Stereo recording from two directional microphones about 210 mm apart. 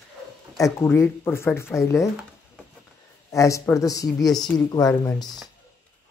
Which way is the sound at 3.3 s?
15° left (ahead or behind).